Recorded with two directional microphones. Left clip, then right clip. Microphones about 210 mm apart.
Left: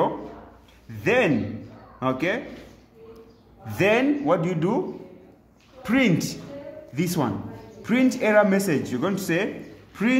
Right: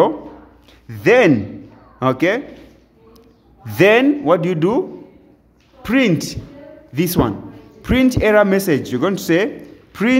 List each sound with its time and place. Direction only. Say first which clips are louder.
0.8 s a man's voice: right 9 dB; 45° right (ahead or behind)
3.6 s a woman's voice: right 9 dB; 45° right (ahead or behind)